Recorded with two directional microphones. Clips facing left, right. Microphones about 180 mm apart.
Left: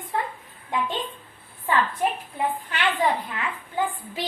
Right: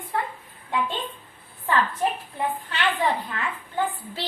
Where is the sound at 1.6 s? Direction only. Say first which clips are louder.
Even; 15° left (ahead or behind).